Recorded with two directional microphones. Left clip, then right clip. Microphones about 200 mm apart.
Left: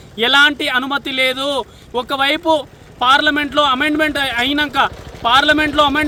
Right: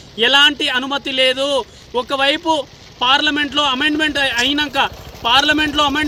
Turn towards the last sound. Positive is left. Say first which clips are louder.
# left 2 dB
turn(degrees=25)  # may be behind; listen again after turning